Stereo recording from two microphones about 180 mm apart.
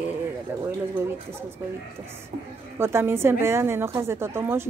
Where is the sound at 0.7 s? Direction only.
15° right (ahead or behind).